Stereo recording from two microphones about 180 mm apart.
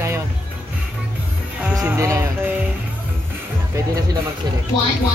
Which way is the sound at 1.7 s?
15° right (ahead or behind).